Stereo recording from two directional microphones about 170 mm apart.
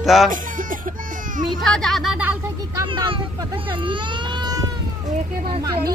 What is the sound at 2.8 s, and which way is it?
Baby cry, 30° right (ahead or behind).